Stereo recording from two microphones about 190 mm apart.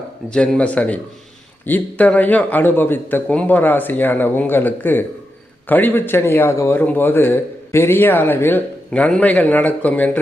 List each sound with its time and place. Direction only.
0.3 s speech: 5° left (ahead or behind)